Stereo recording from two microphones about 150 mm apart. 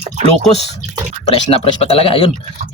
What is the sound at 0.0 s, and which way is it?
Speech, 45° right (ahead or behind).